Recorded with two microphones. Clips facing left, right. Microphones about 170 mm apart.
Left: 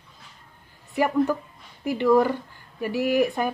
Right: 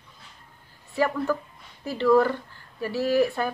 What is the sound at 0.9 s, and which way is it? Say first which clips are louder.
Speech: left 3 dB; 15° left (ahead or behind).